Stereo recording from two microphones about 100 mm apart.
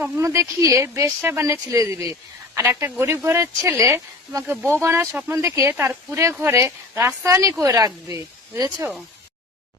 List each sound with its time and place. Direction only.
0.0 s speech: 30° right (ahead or behind)
7.3 s speech: 35° right (ahead or behind)